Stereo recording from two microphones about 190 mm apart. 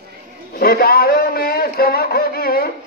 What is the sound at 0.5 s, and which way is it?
A man's voice, 50° left (ahead or behind).